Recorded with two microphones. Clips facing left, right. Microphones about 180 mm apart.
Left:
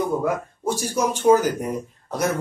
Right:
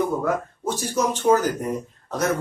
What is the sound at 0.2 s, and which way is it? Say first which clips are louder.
Speech: even; 10° left (ahead or behind).